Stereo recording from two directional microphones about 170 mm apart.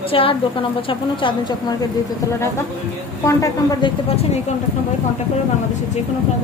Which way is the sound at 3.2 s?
20° left (ahead or behind).